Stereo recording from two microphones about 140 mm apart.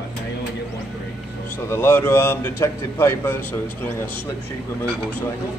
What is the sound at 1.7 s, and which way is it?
A man's voice, 15° left (ahead or behind).